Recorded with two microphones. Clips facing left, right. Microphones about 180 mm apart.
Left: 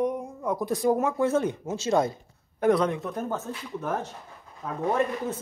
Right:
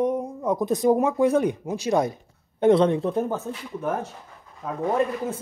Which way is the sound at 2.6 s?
25° right (ahead or behind).